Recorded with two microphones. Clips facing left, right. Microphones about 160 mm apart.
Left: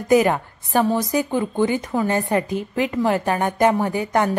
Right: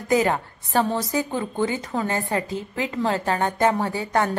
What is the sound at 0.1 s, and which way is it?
A woman's voice, 15° left (ahead or behind).